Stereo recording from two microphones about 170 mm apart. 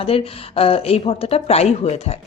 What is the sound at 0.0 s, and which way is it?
A woman's voice, 35° left (ahead or behind).